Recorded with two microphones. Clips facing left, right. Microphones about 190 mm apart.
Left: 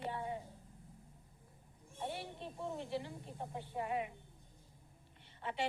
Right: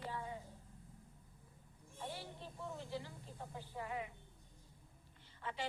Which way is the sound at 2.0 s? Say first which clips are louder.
Left 5 dB; 25° left (ahead or behind).